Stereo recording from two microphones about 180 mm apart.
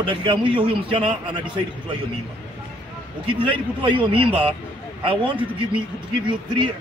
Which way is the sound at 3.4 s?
25° right (ahead or behind).